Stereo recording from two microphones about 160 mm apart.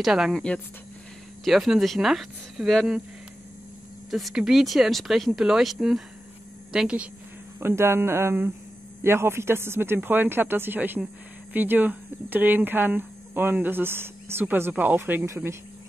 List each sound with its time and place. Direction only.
0.0 s speech: centre (ahead or behind)
4.1 s speech: centre (ahead or behind); by 15.5 s 15° right (ahead or behind)